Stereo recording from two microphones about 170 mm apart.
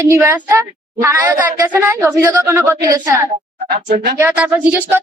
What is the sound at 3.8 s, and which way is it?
Speech, 70° right (ahead or behind).